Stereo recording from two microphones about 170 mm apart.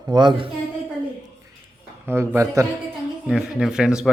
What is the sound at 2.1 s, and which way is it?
Speech, 15° right (ahead or behind).